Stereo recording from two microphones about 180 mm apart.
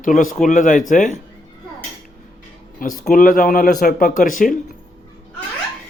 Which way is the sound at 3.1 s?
50° left (ahead or behind).